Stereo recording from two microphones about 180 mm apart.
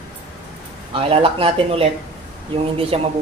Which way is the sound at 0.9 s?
30° right (ahead or behind).